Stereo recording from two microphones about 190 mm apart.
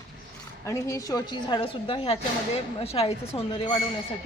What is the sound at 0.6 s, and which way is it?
A woman's voice, 15° left (ahead or behind).